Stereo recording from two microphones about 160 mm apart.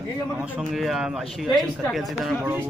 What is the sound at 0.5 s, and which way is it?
Speech, centre (ahead or behind).